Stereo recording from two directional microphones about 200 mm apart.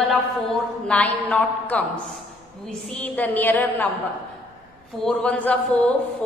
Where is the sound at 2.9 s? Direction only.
10° left (ahead or behind).